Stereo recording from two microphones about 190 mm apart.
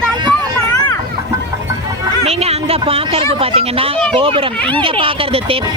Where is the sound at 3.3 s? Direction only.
30° right (ahead or behind).